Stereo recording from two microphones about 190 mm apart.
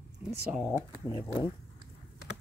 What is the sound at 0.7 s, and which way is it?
Speech, 15° left (ahead or behind).